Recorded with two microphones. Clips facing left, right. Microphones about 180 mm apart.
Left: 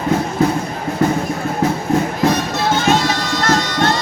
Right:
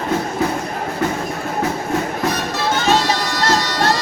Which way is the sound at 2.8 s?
35° right (ahead or behind).